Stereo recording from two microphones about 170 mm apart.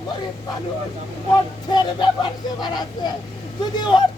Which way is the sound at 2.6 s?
25° left (ahead or behind).